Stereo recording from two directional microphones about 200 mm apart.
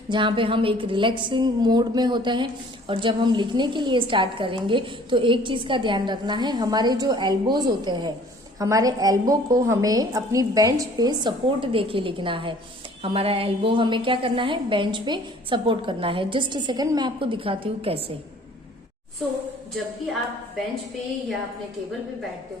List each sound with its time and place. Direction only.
0.1 s a woman's voice: 25° right (ahead or behind)